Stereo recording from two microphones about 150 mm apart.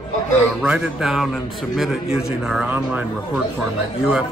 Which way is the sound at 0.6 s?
5° right (ahead or behind).